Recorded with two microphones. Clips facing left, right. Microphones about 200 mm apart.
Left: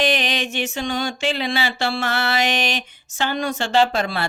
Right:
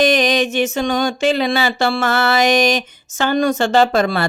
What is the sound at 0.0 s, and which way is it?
A woman's voice, 40° right (ahead or behind).